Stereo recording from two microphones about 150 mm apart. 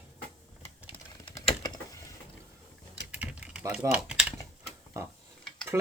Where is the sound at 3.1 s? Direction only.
10° right (ahead or behind).